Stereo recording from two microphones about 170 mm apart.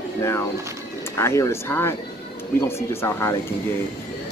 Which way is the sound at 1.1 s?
15° left (ahead or behind).